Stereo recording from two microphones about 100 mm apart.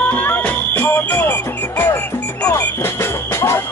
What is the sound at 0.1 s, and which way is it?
Music, 15° left (ahead or behind).